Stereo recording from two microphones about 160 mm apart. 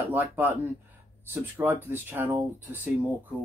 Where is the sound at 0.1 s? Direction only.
15° right (ahead or behind).